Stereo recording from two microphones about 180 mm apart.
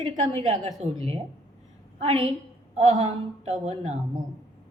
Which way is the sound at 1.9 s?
30° right (ahead or behind).